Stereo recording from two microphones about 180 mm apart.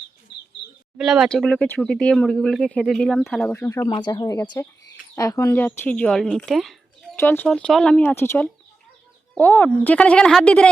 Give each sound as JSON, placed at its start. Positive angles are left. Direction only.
{"t": 0.3, "sound": "bird", "side_deg": 75}
{"t": 0.9, "sound": "speech", "side_deg": -5}
{"t": 7.2, "sound": "speech", "side_deg": 10}